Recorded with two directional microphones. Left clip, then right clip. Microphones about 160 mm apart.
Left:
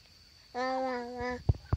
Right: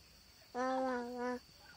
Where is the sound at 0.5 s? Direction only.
5° left (ahead or behind).